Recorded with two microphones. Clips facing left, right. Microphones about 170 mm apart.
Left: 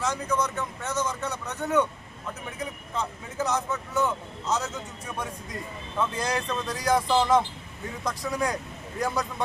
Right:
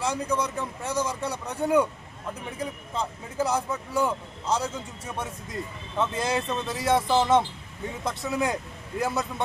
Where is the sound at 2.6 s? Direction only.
30° right (ahead or behind).